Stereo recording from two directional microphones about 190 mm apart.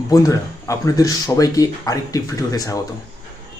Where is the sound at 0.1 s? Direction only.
20° left (ahead or behind).